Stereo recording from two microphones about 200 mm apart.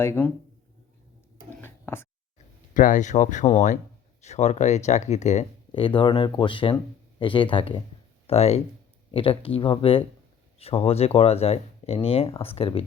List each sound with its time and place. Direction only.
0.0 s speech: 10° left (ahead or behind)
1.5 s a sound: 10° left (ahead or behind)
2.7 s speech: 40° left (ahead or behind)